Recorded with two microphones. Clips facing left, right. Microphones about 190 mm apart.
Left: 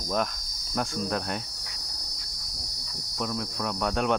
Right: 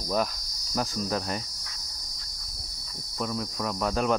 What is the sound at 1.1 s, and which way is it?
Speech, centre (ahead or behind).